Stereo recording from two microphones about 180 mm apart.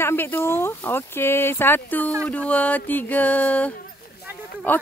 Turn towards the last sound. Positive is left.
turn(degrees=10)  # may be behind; listen again after turning